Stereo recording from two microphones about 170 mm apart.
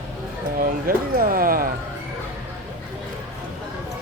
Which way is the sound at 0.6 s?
60° right (ahead or behind).